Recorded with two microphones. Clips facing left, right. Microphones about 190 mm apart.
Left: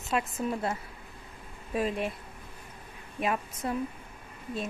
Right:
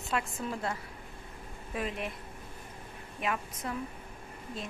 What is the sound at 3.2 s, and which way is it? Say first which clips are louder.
Speech: left 4 dB; 25° left (ahead or behind).